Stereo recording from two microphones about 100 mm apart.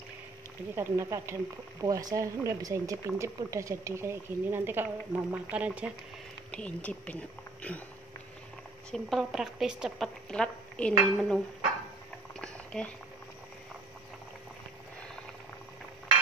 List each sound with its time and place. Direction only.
0.7 s speech: 25° right (ahead or behind)
1.9 s speech: 35° right (ahead or behind); by 5.9 s 15° right (ahead or behind)
6.5 s speech: 15° left (ahead or behind)
8.9 s a woman's voice: centre (ahead or behind)
12.4 s a sound: 10° left (ahead or behind)